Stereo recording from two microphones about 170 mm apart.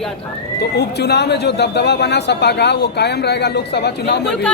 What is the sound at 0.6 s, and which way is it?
Speech, 75° left (ahead or behind).